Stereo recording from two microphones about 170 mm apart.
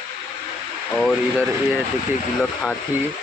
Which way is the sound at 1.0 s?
5° left (ahead or behind).